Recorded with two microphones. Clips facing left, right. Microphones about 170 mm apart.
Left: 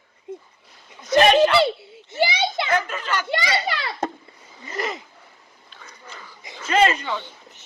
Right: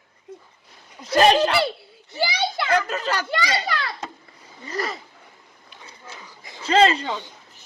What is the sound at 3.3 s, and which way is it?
A child's voice, 25° left (ahead or behind).